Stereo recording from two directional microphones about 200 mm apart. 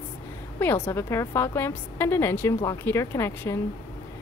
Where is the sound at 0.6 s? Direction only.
10° left (ahead or behind).